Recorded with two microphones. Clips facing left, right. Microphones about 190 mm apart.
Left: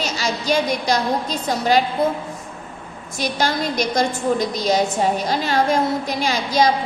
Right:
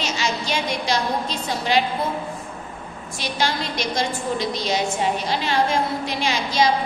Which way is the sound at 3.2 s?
40° left (ahead or behind).